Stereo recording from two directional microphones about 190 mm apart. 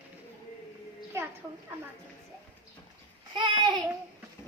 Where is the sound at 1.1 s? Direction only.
15° right (ahead or behind).